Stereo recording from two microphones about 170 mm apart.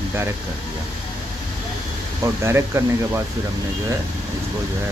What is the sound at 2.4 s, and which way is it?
Speech, 15° right (ahead or behind).